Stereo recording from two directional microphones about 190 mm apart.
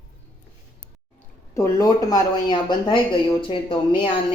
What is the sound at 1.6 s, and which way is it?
Speech, 20° left (ahead or behind).